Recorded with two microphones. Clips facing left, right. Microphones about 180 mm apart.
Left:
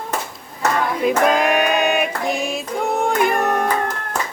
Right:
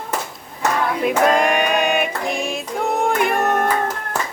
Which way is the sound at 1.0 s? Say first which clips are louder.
Even; centre (ahead or behind).